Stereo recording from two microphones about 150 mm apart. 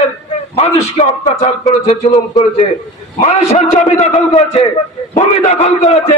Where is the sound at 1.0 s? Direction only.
45° left (ahead or behind).